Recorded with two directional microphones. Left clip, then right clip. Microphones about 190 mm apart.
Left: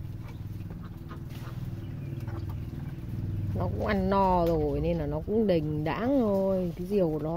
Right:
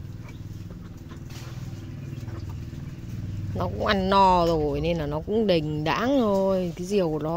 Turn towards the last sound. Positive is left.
turn(degrees=-5)  # may be behind; listen again after turning